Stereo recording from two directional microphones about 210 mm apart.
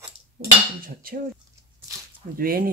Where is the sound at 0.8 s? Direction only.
45° right (ahead or behind).